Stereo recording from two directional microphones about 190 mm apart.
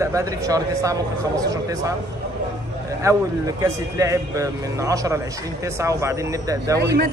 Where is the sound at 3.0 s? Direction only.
15° right (ahead or behind).